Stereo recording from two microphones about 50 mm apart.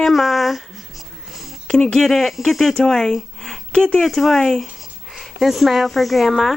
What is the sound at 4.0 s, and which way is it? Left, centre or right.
Speech, centre.